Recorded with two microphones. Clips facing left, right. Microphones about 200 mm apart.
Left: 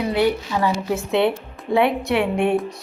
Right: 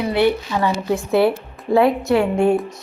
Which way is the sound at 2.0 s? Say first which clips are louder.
Right 3 dB; centre (ahead or behind).